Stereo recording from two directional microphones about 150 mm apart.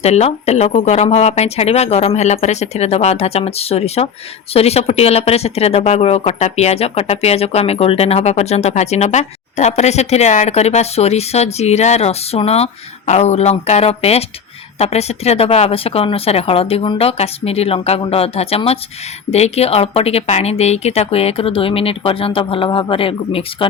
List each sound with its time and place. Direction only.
0.0 s speech: 45° left (ahead or behind)